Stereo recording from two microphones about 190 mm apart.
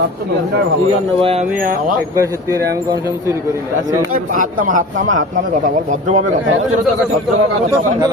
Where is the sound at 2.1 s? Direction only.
15° right (ahead or behind).